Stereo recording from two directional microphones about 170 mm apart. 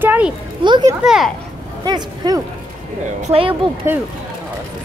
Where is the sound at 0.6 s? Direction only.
25° right (ahead or behind).